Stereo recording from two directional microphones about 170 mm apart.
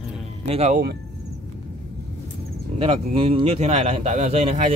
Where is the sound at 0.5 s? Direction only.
40° right (ahead or behind).